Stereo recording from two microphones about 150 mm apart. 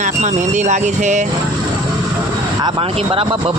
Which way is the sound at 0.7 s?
55° right (ahead or behind).